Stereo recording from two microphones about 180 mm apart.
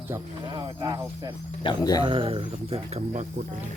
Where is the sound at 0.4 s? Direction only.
25° right (ahead or behind).